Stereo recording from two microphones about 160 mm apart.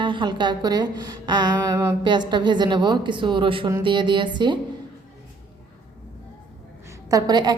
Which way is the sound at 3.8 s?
30° right (ahead or behind).